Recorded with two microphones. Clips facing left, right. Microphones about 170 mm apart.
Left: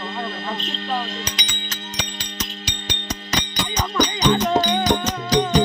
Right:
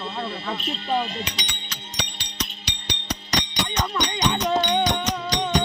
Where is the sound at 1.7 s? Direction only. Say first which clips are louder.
Left 2 dB; 50° left (ahead or behind).